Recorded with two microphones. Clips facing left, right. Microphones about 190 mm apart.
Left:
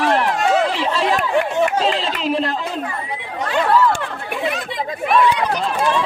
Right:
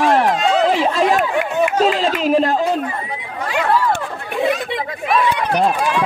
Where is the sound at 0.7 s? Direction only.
45° right (ahead or behind).